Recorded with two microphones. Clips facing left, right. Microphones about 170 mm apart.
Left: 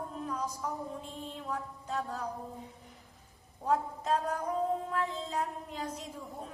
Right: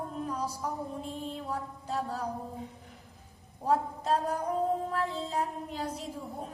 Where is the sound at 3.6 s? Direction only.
35° right (ahead or behind).